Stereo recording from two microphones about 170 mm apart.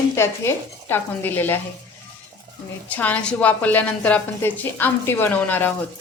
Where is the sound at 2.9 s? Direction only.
10° left (ahead or behind).